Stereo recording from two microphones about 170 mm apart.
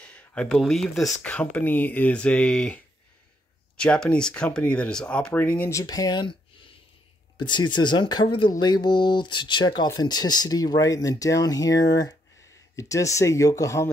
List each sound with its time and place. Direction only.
0.0 s speech: 5° left (ahead or behind); by 6.3 s 25° left (ahead or behind)
7.3 s speech: 25° left (ahead or behind)